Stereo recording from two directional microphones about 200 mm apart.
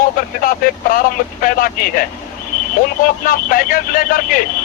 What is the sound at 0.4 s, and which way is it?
Speech, 45° left (ahead or behind).